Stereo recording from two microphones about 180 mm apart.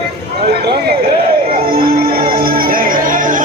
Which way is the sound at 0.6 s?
65° right (ahead or behind).